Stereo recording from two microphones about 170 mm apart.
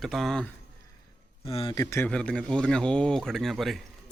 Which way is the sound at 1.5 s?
35° left (ahead or behind).